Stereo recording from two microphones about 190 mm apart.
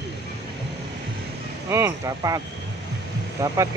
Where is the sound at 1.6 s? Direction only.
15° right (ahead or behind).